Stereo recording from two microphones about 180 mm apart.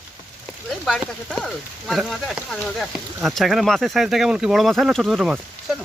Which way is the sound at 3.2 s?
Centre (ahead or behind).